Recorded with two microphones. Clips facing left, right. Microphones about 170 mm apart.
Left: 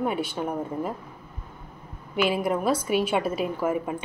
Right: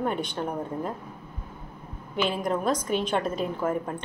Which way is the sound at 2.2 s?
10° left (ahead or behind).